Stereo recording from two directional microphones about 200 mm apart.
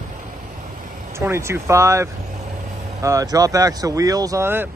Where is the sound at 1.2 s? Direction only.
15° right (ahead or behind).